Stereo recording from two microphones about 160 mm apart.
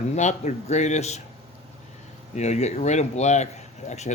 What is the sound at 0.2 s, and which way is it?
Speech, 45° left (ahead or behind).